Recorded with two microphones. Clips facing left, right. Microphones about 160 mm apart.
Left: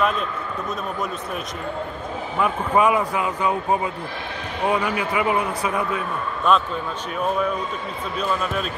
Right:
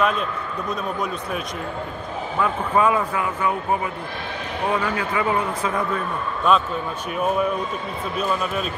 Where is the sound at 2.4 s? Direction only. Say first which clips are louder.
Left 1 dB; 15° left (ahead or behind).